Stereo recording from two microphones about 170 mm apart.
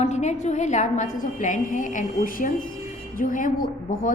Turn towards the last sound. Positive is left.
turn(degrees=55)  # may be behind; listen again after turning